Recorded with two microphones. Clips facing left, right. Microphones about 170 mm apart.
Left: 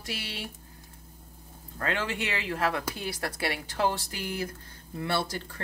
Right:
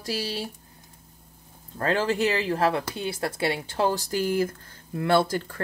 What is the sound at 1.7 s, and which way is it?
A woman's voice, 35° right (ahead or behind).